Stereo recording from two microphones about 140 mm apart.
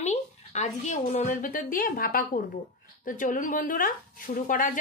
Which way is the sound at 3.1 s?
70° left (ahead or behind).